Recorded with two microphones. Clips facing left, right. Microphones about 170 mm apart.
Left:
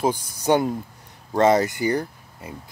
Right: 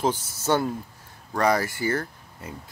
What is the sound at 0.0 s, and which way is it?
Speech, 15° left (ahead or behind).